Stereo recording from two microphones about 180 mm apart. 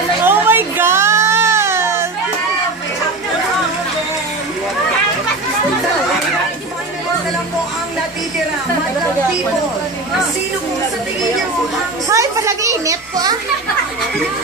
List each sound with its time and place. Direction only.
0.2 s baby cry: 10° right (ahead or behind)
12.1 s a child's voice: 15° right (ahead or behind)